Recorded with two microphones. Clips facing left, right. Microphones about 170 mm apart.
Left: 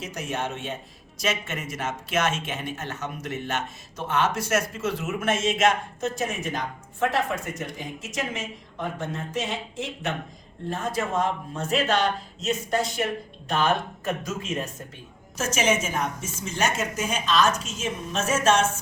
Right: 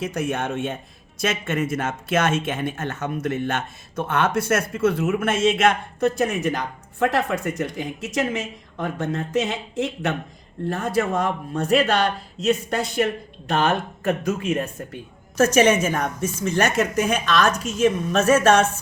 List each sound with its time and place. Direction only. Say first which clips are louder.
0.0 s speech: right 6 dB; 55° right (ahead or behind)
14.3 s speech: right 7 dB; 60° right (ahead or behind)